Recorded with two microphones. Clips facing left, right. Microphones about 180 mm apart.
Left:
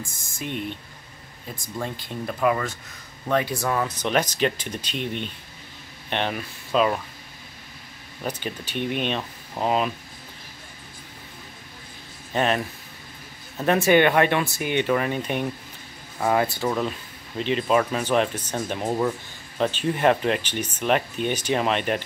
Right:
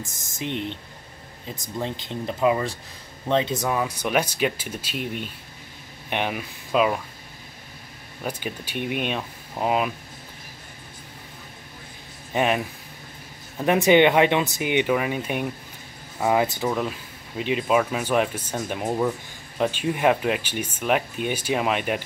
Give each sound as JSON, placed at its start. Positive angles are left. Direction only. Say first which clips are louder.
{"t": 0.0, "sound": "speech", "louder": "right 2 dB", "side_deg": -20}
{"t": 8.2, "sound": "speech", "louder": "even", "side_deg": -10}
{"t": 12.3, "sound": "speech", "louder": "right 1 dB", "side_deg": -10}
{"t": 16.6, "sound": "speech", "louder": "even", "side_deg": -5}